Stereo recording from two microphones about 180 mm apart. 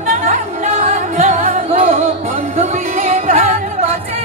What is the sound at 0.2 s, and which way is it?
Music, 50° right (ahead or behind).